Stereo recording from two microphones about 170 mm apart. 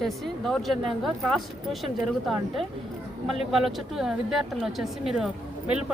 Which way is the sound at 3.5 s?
Centre (ahead or behind).